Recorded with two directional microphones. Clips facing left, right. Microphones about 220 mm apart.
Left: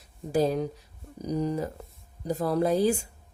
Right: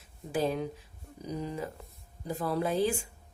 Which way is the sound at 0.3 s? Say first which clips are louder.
Left 5 dB; 40° left (ahead or behind).